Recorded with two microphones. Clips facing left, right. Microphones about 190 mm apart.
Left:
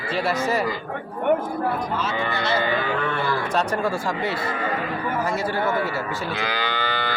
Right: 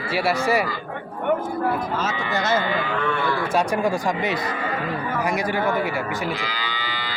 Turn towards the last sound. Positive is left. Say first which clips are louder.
# left 5 dB
turn(degrees=60)  # may be behind; listen again after turning